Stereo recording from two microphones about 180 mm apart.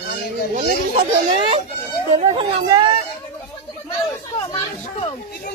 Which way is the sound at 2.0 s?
30° right (ahead or behind).